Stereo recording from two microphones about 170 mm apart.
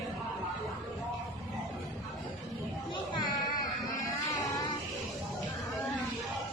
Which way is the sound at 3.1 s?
25° left (ahead or behind).